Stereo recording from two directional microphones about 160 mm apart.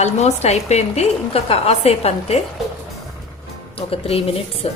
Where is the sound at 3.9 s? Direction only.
35° left (ahead or behind).